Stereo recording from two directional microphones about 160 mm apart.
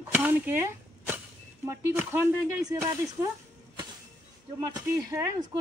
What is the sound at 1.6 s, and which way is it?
Speech, 15° right (ahead or behind).